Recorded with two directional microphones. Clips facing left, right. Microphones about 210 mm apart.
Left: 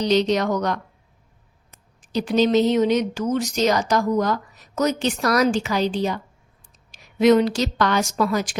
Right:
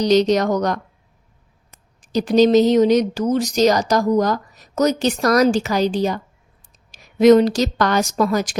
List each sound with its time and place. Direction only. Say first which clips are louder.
0.0 s speech: right 4 dB; 40° right (ahead or behind)
2.0 s speech: right 5 dB; 40° right (ahead or behind)